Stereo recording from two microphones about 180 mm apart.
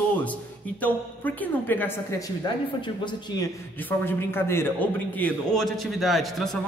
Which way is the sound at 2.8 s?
25° left (ahead or behind).